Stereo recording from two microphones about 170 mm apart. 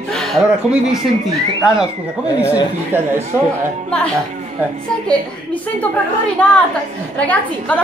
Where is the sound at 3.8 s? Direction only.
5° left (ahead or behind).